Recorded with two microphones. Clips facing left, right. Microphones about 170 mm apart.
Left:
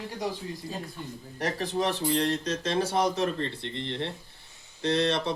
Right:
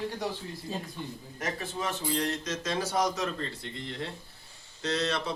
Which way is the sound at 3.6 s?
70° left (ahead or behind).